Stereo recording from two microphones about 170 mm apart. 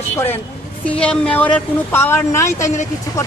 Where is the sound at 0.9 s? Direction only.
5° left (ahead or behind).